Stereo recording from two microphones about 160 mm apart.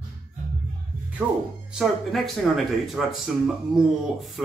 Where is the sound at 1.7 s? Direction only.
Centre (ahead or behind).